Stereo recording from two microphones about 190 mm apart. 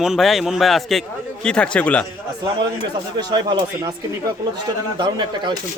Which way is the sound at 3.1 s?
20° right (ahead or behind).